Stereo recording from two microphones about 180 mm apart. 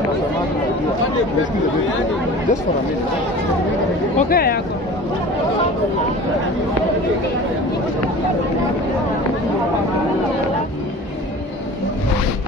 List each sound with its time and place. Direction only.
4.2 s speech: 55° left (ahead or behind)